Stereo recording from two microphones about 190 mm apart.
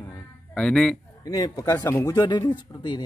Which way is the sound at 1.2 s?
20° left (ahead or behind).